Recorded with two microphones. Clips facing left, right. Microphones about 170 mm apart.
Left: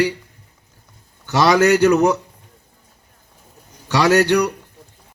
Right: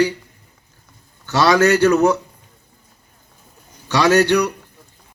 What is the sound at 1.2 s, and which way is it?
Speech, 15° left (ahead or behind).